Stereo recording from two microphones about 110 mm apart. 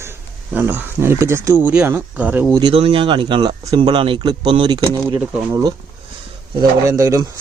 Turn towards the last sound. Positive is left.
turn(degrees=-30)  # may be behind; listen again after turning